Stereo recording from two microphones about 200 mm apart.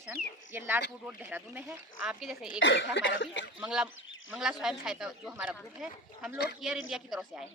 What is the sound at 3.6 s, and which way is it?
Speech, 5° right (ahead or behind).